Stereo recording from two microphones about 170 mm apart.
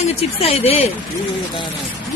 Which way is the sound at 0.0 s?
35° left (ahead or behind).